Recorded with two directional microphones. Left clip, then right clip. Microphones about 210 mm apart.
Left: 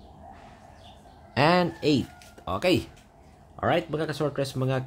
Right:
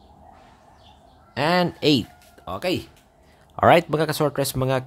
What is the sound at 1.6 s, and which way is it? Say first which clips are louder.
Speech: right 5 dB; 20° right (ahead or behind).